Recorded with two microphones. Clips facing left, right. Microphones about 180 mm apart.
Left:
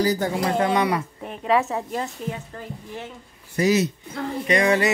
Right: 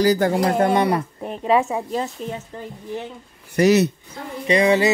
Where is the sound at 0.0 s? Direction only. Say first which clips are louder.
Right 5 dB; 80° right.